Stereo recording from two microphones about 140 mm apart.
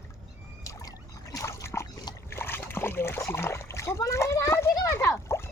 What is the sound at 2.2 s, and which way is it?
Splash, 15° left (ahead or behind).